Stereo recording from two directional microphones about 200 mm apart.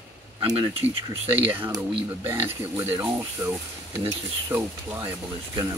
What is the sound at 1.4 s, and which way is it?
Speech, 10° right (ahead or behind).